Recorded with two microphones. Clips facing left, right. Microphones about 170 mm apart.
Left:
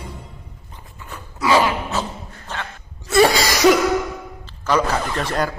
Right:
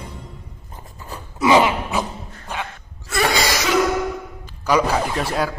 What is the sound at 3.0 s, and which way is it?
Cough, 25° left (ahead or behind).